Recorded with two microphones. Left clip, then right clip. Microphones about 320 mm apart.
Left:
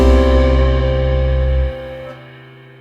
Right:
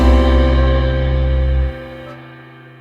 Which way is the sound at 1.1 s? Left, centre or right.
Centre.